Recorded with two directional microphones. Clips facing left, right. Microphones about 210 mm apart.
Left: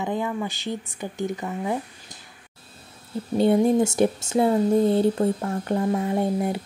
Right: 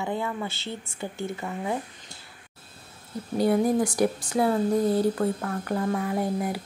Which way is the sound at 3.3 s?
25° left (ahead or behind).